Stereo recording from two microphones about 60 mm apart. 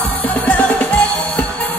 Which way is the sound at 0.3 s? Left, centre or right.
Left.